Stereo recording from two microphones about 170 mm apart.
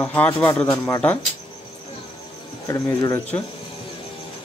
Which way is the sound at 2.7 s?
20° left (ahead or behind).